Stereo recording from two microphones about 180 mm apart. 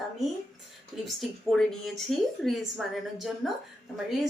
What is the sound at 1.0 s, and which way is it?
Speech, centre (ahead or behind).